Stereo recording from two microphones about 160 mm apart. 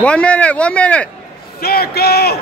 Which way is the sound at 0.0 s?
5° left (ahead or behind).